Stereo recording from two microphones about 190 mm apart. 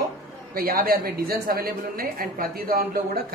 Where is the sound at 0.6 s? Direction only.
50° right (ahead or behind).